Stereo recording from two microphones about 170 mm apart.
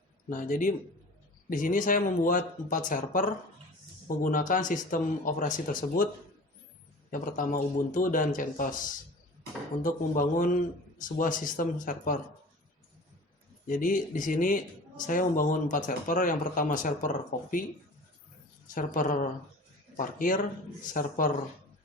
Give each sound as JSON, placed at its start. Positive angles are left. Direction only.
{"t": 0.3, "sound": "a man's voice", "side_deg": 50}
{"t": 7.1, "sound": "a man's voice", "side_deg": 50}
{"t": 13.7, "sound": "a man's voice", "side_deg": 50}
{"t": 18.7, "sound": "a man's voice", "side_deg": 50}